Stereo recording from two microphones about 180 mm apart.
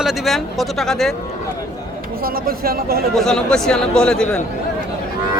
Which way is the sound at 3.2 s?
5° left (ahead or behind).